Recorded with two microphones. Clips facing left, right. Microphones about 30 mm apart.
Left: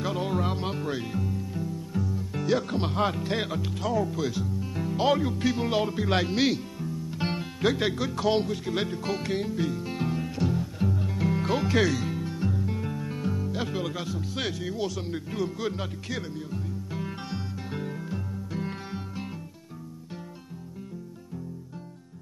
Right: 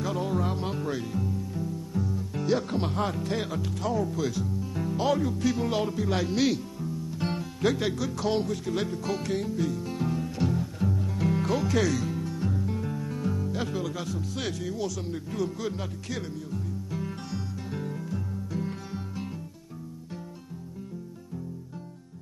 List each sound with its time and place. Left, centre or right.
0.0 s music: left
2.0 s music: centre
2.8 s speech: centre
5.6 s speech: centre
6.2 s music: left
7.6 s speech: centre
9.2 s music: left
10.3 s music: centre
10.8 s music: centre
11.4 s speech: left
11.9 s music: centre
13.9 s speech: centre
16.3 s music: left